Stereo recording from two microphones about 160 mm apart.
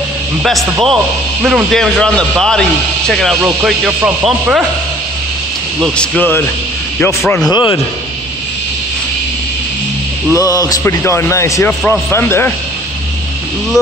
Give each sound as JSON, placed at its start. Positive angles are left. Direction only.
{"t": 0.4, "sound": "a man's voice", "side_deg": 0}
{"t": 5.9, "sound": "speech", "side_deg": 10}
{"t": 7.5, "sound": "speech", "side_deg": 25}
{"t": 10.3, "sound": "speech", "side_deg": 20}